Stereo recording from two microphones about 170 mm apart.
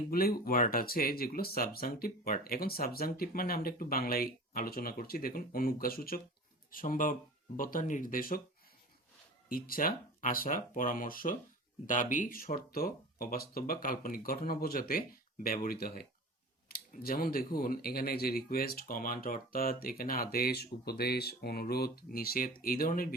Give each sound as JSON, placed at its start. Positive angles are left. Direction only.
{"t": 0.1, "sound": "speech", "side_deg": 60}
{"t": 9.5, "sound": "speech", "side_deg": 60}